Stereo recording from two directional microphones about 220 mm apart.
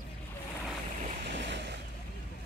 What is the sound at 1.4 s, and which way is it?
Boat, 50° right (ahead or behind).